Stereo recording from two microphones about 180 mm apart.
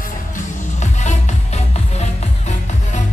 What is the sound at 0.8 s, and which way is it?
Music, 40° left (ahead or behind).